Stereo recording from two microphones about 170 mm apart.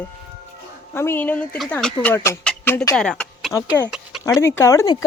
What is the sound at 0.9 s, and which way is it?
Speech, 15° left (ahead or behind).